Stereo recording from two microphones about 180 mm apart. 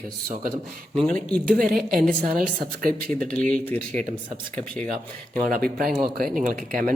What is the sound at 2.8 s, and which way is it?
Speech, 50° right (ahead or behind).